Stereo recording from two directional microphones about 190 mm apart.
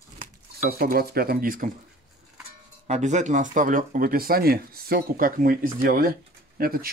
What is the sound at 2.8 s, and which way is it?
Speech, 40° right (ahead or behind).